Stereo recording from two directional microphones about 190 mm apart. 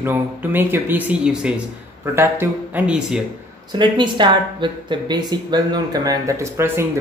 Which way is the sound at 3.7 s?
25° right (ahead or behind).